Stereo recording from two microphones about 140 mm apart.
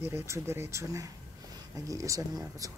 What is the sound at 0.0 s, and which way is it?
Speech, 15° right (ahead or behind).